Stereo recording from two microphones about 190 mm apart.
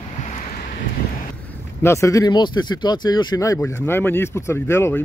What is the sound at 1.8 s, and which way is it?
Speech, 15° left (ahead or behind).